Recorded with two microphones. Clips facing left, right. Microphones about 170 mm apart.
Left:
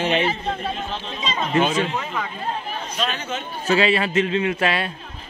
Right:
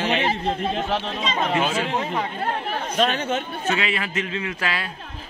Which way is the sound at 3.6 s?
30° left (ahead or behind).